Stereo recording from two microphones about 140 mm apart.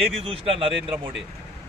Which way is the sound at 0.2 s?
40° right (ahead or behind).